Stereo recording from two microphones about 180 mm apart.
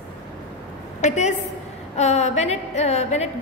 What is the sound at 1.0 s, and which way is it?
A woman's voice, 40° left (ahead or behind).